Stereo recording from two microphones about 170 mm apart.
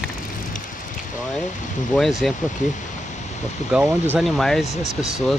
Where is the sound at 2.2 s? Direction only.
Centre (ahead or behind).